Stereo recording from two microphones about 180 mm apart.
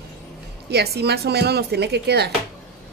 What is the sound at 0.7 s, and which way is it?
Speech, 60° right (ahead or behind).